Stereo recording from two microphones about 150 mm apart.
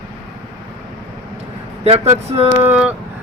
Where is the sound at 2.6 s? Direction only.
10° right (ahead or behind).